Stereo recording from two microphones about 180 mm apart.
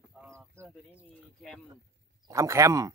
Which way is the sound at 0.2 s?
10° right (ahead or behind).